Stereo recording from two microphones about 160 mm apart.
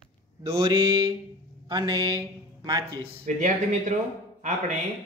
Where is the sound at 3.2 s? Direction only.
50° right (ahead or behind).